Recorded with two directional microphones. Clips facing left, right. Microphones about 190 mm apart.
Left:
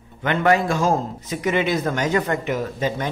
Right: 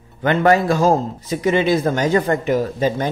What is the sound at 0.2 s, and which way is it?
Speech, 35° right (ahead or behind).